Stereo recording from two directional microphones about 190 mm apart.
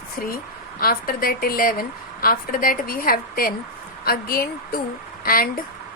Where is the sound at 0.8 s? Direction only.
50° left (ahead or behind).